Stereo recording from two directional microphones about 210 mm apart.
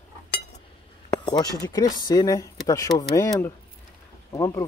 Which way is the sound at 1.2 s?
20° left (ahead or behind).